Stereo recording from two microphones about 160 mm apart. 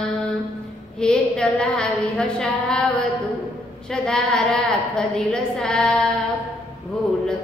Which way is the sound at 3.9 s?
5° left (ahead or behind).